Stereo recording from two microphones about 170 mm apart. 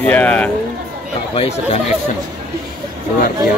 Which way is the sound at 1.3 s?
40° left (ahead or behind).